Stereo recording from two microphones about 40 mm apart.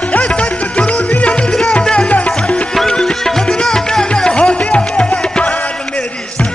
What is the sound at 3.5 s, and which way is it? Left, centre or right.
Music, centre.